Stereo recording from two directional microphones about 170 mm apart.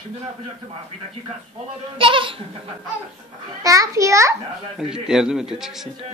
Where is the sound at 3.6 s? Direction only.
20° right (ahead or behind).